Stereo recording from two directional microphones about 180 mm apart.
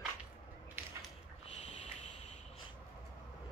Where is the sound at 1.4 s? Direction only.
35° left (ahead or behind).